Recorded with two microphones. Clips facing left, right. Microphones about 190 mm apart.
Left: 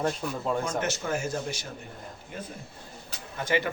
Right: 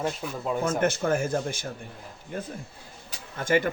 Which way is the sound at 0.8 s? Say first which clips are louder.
Right 5 dB; 55° right (ahead or behind).